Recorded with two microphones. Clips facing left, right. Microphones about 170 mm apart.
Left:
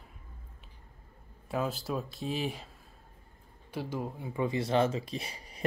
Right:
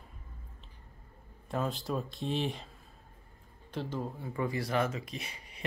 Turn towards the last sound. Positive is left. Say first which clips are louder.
# left 4 dB
turn(degrees=35)  # may be behind; listen again after turning